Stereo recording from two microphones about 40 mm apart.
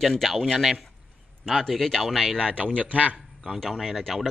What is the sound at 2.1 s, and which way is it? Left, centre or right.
Speech, centre.